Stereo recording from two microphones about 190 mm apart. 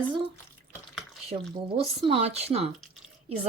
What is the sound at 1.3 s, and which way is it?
Speech, 30° right (ahead or behind).